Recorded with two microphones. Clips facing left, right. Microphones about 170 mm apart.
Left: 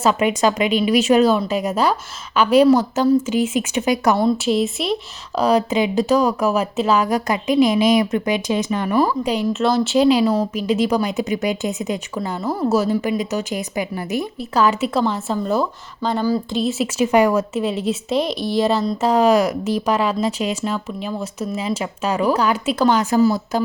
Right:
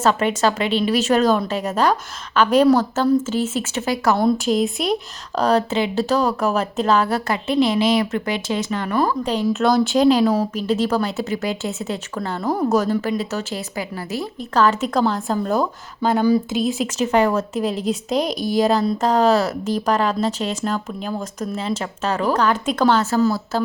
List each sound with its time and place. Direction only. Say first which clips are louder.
0.0 s a woman's voice: left 1 dB; 10° left (ahead or behind)
4.2 s a woman's voice: even; centre (ahead or behind)
16.6 s a woman's voice: left 2 dB; 5° left (ahead or behind)